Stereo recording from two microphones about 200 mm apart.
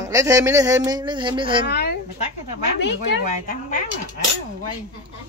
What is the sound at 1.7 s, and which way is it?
Speech, 55° left (ahead or behind).